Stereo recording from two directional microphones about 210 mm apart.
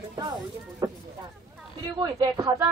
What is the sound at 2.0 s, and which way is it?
Speech, 20° right (ahead or behind).